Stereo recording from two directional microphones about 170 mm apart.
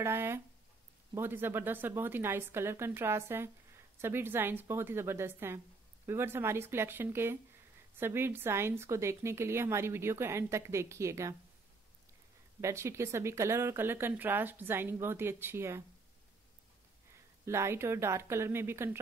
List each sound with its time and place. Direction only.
0.0 s a woman's voice: 15° right (ahead or behind)
12.5 s a woman's voice: 15° right (ahead or behind)
17.5 s a woman's voice: 15° right (ahead or behind)